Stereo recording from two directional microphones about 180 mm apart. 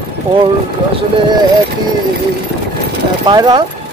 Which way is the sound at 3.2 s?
25° right (ahead or behind).